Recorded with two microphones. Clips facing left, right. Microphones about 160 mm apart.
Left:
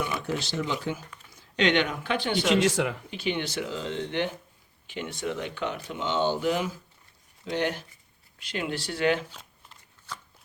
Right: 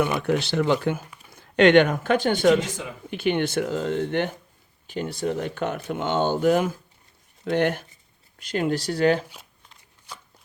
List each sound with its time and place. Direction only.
0.0 s speech: 60° right (ahead or behind); by 2.4 s 45° right (ahead or behind)
2.5 s speech: 75° left (ahead or behind)
3.1 s speech: 55° right (ahead or behind)
4.9 s speech: 40° right (ahead or behind)
10.1 s shuffling cards: 15° right (ahead or behind)